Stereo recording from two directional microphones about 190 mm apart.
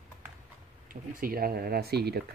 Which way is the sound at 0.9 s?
50° right (ahead or behind).